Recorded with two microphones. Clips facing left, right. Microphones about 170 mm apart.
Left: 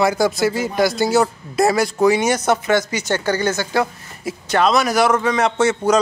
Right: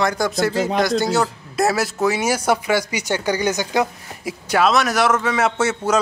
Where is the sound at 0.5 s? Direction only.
70° right (ahead or behind).